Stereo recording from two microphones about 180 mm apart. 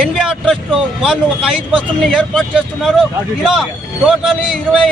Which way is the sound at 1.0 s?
5° right (ahead or behind).